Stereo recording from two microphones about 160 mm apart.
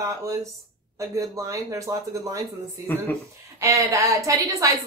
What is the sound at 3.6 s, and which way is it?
Speech, 20° right (ahead or behind).